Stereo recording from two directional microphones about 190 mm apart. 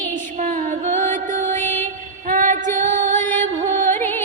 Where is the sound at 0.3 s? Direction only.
45° right (ahead or behind).